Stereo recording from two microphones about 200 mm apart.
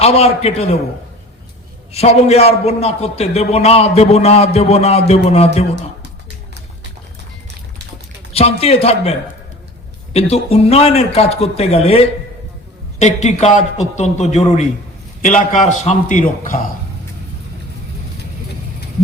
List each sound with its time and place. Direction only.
0.0 s a man's voice: 30° left (ahead or behind)
1.9 s a man's voice: 30° left (ahead or behind)
8.3 s a man's voice: 30° left (ahead or behind)